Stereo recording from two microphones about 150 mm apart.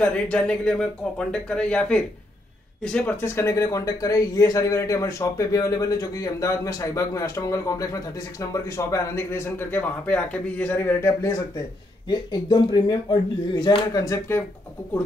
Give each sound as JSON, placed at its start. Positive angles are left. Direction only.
{"t": 0.0, "sound": "speech", "side_deg": 10}
{"t": 12.1, "sound": "speech", "side_deg": 30}